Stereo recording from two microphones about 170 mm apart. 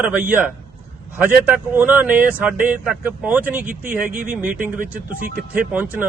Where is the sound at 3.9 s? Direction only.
50° right (ahead or behind).